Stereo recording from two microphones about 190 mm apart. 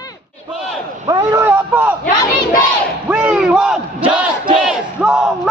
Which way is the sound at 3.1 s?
5° right (ahead or behind).